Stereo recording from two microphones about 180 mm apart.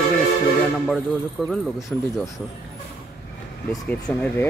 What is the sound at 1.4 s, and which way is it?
Speech, centre (ahead or behind).